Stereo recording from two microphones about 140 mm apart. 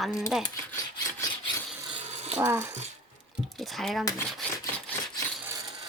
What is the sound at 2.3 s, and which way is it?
Speech, 15° right (ahead or behind).